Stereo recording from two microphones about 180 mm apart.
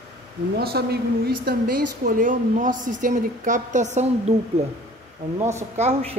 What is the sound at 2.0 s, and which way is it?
A woman's voice, 50° right (ahead or behind).